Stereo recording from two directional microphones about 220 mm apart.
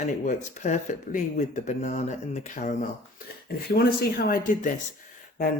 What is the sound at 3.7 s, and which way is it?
Speech, 45° left (ahead or behind).